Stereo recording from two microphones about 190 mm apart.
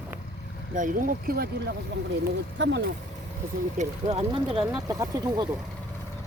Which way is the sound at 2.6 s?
65° right (ahead or behind).